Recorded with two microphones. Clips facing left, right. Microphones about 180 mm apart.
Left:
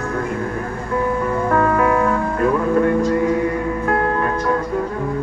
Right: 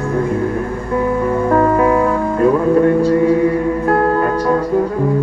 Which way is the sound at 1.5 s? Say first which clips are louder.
Right 4 dB; 30° right (ahead or behind).